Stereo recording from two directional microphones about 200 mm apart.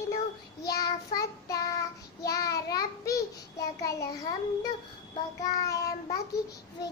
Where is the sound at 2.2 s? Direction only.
15° left (ahead or behind).